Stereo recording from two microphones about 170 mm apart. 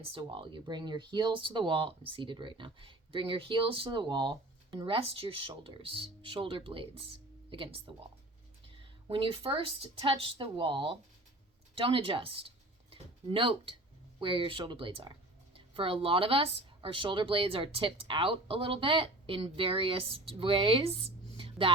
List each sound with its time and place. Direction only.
0.1 s a woman's voice: 30° right (ahead or behind)